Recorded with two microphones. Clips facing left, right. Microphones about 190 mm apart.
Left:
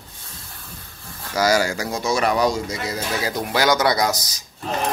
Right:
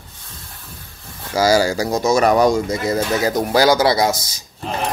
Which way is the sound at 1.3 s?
30° right (ahead or behind).